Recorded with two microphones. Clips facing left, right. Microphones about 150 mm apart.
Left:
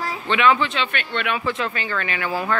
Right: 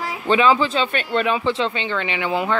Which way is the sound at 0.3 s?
35° right (ahead or behind).